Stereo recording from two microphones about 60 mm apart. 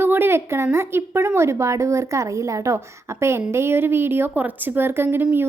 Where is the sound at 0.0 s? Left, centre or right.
Right.